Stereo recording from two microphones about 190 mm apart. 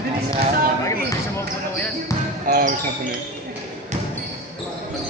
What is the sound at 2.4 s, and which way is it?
Basketball bounce, 50° right (ahead or behind).